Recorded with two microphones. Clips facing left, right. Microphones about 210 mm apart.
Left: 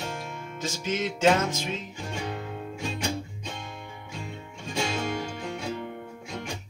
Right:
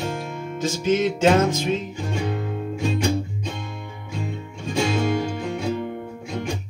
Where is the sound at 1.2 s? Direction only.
45° right (ahead or behind).